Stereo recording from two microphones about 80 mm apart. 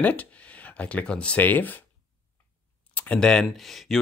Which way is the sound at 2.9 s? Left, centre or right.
Centre.